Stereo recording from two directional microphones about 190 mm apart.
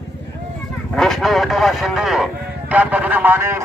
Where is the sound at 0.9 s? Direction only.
Centre (ahead or behind).